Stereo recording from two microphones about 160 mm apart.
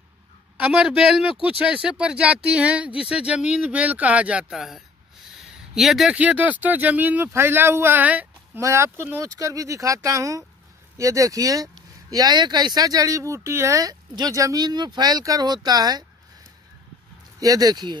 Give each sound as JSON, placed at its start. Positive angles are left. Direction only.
{"t": 0.6, "sound": "speech", "side_deg": -5}
{"t": 17.4, "sound": "speech", "side_deg": -25}